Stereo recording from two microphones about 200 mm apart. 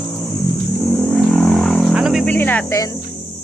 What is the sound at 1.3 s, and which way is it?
Vehicle, centre (ahead or behind).